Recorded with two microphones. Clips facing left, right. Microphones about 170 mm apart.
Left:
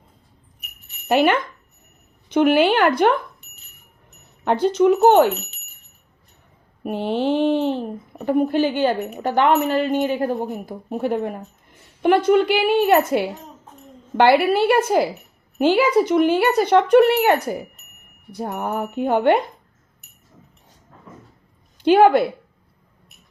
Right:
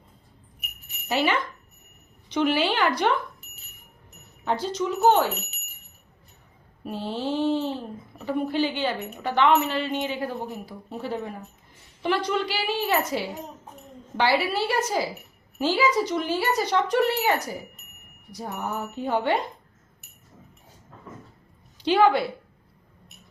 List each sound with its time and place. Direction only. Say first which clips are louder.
1.0 s a child's voice: left 7 dB; 55° left (ahead or behind)
4.4 s a child's voice: left 10 dB; 60° left (ahead or behind)
6.8 s a child's voice: left 8 dB; 60° left (ahead or behind)
21.8 s a woman's voice: left 6 dB; 50° left (ahead or behind)